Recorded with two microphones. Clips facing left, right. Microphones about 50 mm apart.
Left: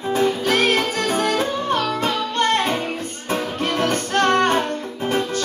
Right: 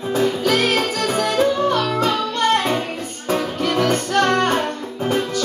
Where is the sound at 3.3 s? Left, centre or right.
Left.